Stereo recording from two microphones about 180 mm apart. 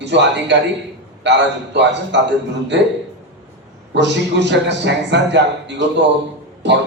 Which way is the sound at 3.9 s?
75° right (ahead or behind).